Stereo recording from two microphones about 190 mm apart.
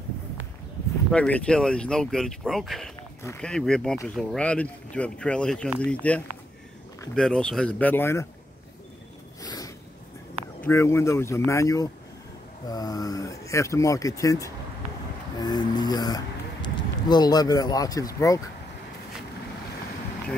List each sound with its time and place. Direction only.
1.1 s speech: 5° left (ahead or behind)
9.4 s a sound: 20° left (ahead or behind)
10.6 s speech: 15° left (ahead or behind)
15.3 s music: 20° left (ahead or behind)
16.6 s speech: 25° left (ahead or behind)